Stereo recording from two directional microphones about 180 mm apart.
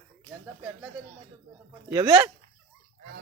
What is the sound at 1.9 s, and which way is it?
Speech, 20° right (ahead or behind).